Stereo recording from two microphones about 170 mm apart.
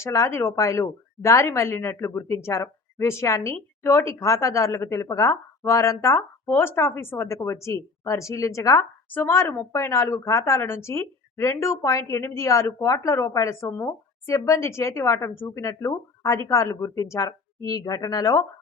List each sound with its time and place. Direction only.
0.0 s a woman's voice: 15° left (ahead or behind)